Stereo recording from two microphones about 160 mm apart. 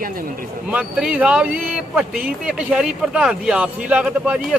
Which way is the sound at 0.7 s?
5° right (ahead or behind).